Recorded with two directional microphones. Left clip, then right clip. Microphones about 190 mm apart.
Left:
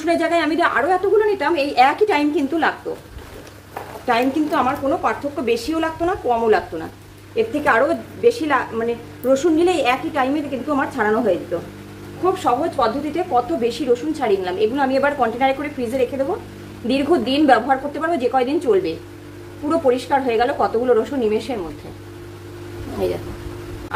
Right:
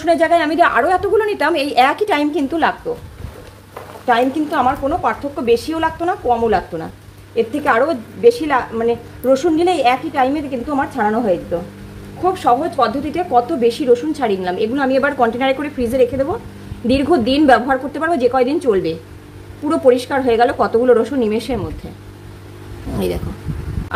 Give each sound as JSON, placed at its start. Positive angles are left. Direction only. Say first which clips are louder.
{"t": 0.0, "sound": "a woman's voice", "louder": "right 5 dB", "side_deg": -30}
{"t": 4.1, "sound": "a woman's voice", "louder": "right 3 dB", "side_deg": -30}
{"t": 12.4, "sound": "a woman's voice", "louder": "right 6 dB", "side_deg": -40}